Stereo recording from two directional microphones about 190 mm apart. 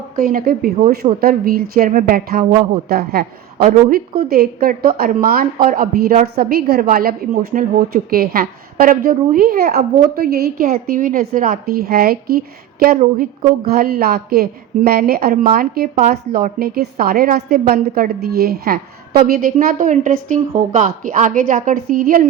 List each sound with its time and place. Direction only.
0.2 s a woman's voice: 50° right (ahead or behind)
13.7 s a woman's voice: 50° right (ahead or behind)